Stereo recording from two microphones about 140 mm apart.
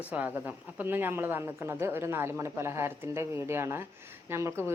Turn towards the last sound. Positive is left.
turn(degrees=-20)  # may be behind; listen again after turning